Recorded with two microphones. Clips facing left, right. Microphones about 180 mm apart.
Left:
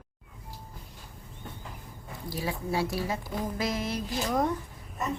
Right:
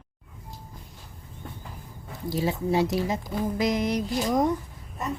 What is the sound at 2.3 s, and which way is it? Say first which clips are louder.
A woman's voice: right 6 dB; 25° right (ahead or behind).